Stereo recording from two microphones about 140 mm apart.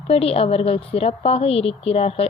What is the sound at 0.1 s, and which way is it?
A woman's voice, 45° left (ahead or behind).